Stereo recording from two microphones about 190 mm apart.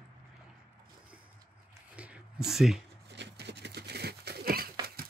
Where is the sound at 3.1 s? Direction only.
65° right (ahead or behind).